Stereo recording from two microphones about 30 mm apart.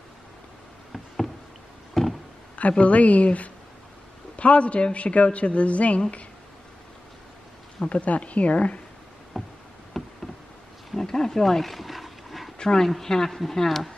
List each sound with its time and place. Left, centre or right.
0.9 s rowboat: centre
2.0 s a sound: centre
2.8 s a woman's voice: left
7.9 s a woman's voice: left
9.3 s a sound: centre
10.9 s wild animals: centre
11.2 s speech: centre
11.6 s dog: centre
12.6 s speech: centre